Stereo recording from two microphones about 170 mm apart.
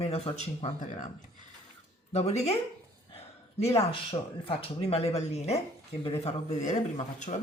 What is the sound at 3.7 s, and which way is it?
Speech, 35° left (ahead or behind).